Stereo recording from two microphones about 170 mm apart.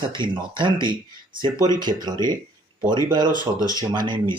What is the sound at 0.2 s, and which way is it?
Speech, 30° right (ahead or behind).